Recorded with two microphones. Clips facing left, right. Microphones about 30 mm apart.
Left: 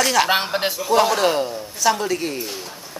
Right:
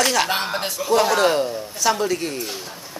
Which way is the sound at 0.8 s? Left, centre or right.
Centre.